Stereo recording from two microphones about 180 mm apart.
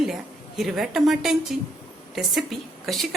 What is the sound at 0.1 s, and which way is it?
A woman's voice, centre (ahead or behind).